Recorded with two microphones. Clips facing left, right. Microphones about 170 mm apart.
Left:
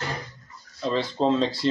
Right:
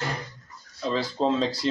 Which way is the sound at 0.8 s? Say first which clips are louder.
Left 1 dB; centre (ahead or behind).